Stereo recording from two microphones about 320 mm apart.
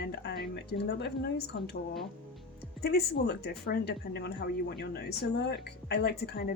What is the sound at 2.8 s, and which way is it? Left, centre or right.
Speech, left.